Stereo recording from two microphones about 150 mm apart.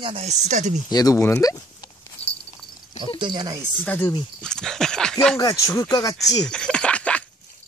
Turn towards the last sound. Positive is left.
turn(degrees=10)  # may be behind; listen again after turning